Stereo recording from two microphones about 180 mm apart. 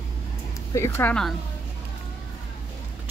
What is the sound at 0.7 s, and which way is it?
Speech, 15° left (ahead or behind).